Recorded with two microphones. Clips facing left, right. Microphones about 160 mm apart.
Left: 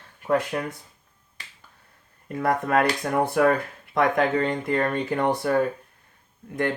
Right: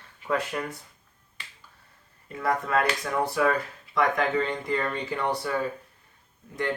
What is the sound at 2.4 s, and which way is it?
Speech, 55° left (ahead or behind).